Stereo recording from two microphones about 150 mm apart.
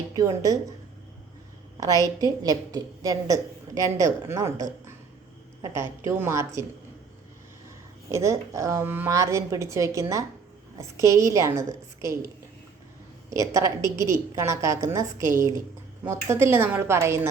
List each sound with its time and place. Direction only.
0.2 s a woman's voice: 25° right (ahead or behind)
2.1 s a woman's voice: 25° right (ahead or behind)
6.0 s a woman's voice: 15° right (ahead or behind)
8.1 s a woman's voice: 20° right (ahead or behind)
13.3 s a woman's voice: 20° right (ahead or behind)